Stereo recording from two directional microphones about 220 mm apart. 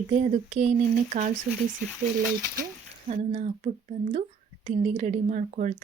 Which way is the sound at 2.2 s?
10° right (ahead or behind).